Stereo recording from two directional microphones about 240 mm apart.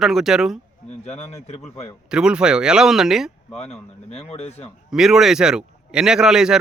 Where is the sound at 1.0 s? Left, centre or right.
Left.